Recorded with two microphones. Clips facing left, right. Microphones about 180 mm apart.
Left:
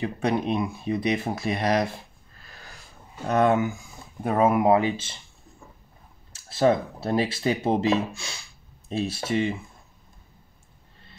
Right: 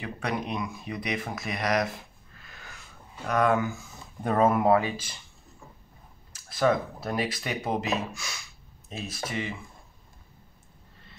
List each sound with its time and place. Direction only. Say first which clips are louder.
0.0 s speech: left 7 dB; 30° left (ahead or behind); by 4.7 s 10° left (ahead or behind)
4.7 s speech: left 3 dB; 25° left (ahead or behind)
6.3 s speech: left 3 dB; 25° left (ahead or behind)